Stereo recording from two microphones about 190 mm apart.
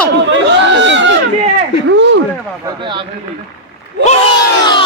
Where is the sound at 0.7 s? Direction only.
70° right (ahead or behind).